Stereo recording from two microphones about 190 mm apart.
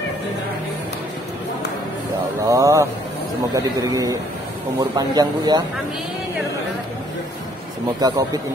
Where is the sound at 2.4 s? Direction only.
15° right (ahead or behind).